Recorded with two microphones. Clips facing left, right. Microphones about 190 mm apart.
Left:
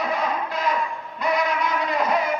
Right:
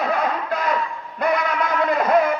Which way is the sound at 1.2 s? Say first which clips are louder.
Right 2 dB; 55° right (ahead or behind).